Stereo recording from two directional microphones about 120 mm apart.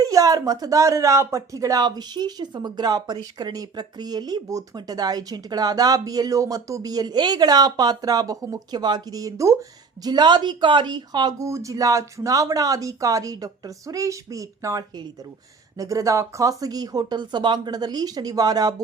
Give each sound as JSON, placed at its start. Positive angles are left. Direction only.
{"t": 0.0, "sound": "speech", "side_deg": -30}